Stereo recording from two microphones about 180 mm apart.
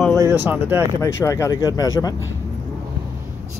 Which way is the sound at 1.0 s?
15° left (ahead or behind).